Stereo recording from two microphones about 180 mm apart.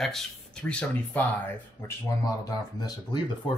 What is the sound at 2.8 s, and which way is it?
Speech, 25° left (ahead or behind).